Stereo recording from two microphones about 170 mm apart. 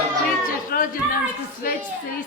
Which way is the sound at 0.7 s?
55° left (ahead or behind).